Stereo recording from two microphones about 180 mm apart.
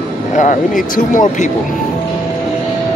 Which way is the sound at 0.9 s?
45° left (ahead or behind).